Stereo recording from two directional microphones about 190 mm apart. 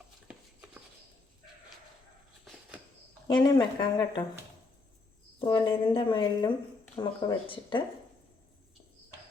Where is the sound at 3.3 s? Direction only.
20° left (ahead or behind).